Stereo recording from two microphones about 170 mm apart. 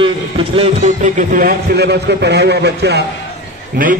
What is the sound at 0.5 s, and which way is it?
A man's voice, 40° right (ahead or behind).